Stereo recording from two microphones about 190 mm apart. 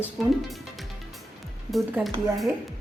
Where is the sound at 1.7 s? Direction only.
Centre (ahead or behind).